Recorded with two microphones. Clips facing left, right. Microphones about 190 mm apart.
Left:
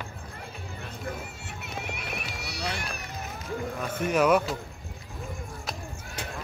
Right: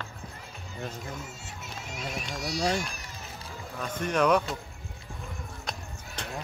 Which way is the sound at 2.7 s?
60° left (ahead or behind).